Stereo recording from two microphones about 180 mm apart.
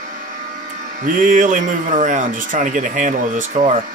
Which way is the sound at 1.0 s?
45° right (ahead or behind).